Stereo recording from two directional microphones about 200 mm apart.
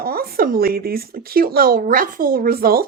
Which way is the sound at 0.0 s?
50° right (ahead or behind).